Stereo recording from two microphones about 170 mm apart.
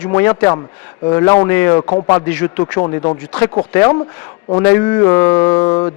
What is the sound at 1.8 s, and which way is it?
Speech, 30° left (ahead or behind).